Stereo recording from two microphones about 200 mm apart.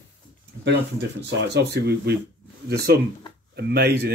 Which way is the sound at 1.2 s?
60° right (ahead or behind).